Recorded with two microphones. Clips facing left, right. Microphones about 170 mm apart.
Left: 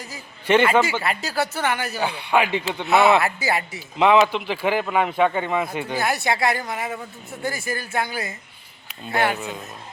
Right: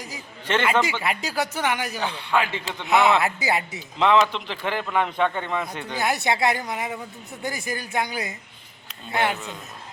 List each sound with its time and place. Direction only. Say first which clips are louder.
0.4 s a man's voice: left 5 dB; 10° left (ahead or behind)
1.0 s speech: left 2 dB; 15° right (ahead or behind)
2.0 s a man's voice: left 6 dB; 10° left (ahead or behind)
2.8 s a woman's voice: left 2 dB; 15° right (ahead or behind)
3.9 s a man's voice: left 3 dB; 10° left (ahead or behind)
6.0 s a woman's voice: even; 20° right (ahead or behind)
9.3 s a man's voice: left 3 dB; 10° left (ahead or behind)